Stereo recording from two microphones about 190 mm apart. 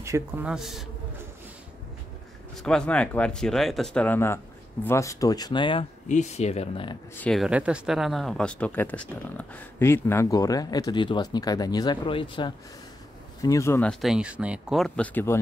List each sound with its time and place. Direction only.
0.0 s speech: 15° right (ahead or behind)
0.5 s speech: centre (ahead or behind)
2.6 s speech: 5° left (ahead or behind); by 5.9 s 25° left (ahead or behind)
6.0 s speech: 35° left (ahead or behind)
7.2 s speech: centre (ahead or behind); by 12.5 s 25° left (ahead or behind)
13.4 s speech: 15° left (ahead or behind)